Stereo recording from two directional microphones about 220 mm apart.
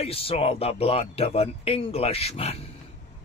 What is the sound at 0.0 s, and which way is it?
Speech, 25° left (ahead or behind).